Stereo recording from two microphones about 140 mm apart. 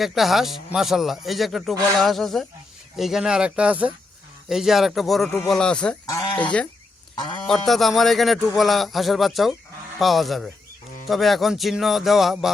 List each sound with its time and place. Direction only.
0.0 s a man's voice: centre (ahead or behind)
6.1 s speech: 25° left (ahead or behind)
6.4 s a man's voice: 10° left (ahead or behind)